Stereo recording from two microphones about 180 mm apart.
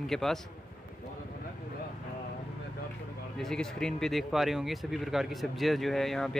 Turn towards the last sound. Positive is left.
turn(degrees=0)  # may be behind; listen again after turning